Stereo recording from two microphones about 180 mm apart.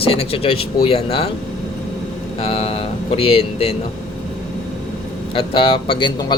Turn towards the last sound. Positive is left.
turn(degrees=25)  # may be behind; listen again after turning